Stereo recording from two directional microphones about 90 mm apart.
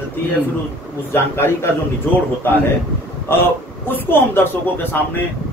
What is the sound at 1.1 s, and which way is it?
A man's voice, 25° left (ahead or behind).